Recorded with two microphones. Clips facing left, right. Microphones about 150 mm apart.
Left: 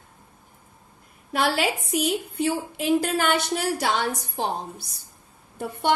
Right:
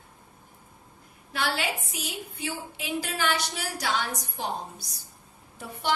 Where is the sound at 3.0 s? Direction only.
55° left (ahead or behind).